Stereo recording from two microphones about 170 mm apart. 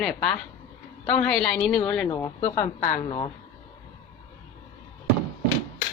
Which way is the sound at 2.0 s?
25° left (ahead or behind).